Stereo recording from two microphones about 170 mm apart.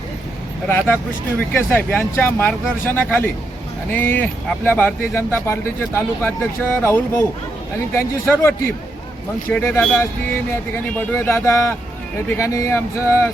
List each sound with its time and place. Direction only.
1.4 s speech: 10° left (ahead or behind)